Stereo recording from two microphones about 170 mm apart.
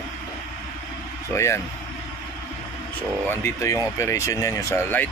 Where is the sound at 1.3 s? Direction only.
15° left (ahead or behind).